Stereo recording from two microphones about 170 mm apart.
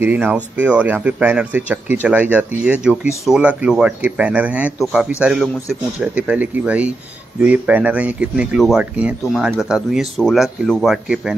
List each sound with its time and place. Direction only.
0.0 s speech: 10° right (ahead or behind)